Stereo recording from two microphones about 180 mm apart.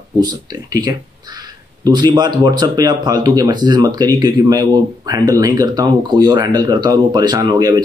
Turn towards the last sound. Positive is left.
turn(degrees=-25)  # may be behind; listen again after turning